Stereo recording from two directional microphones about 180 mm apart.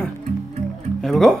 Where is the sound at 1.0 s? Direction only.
Centre (ahead or behind).